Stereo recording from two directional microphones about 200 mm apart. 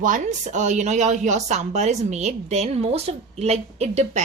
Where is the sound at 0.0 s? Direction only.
40° right (ahead or behind).